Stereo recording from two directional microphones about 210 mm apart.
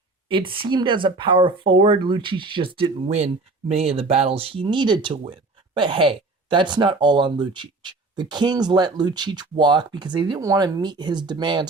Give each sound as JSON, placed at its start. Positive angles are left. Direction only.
{"t": 0.3, "sound": "speech", "side_deg": -25}